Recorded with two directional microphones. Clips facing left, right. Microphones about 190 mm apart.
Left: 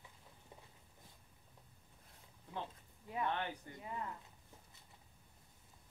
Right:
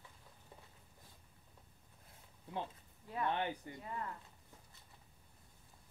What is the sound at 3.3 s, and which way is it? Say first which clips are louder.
Speech: right 3 dB; 15° right (ahead or behind).